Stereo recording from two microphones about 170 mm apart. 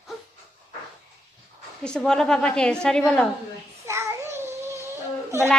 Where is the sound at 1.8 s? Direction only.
5° left (ahead or behind).